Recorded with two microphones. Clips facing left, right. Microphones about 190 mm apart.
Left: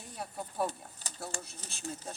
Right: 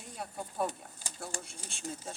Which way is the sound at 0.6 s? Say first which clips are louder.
Even; 10° right (ahead or behind).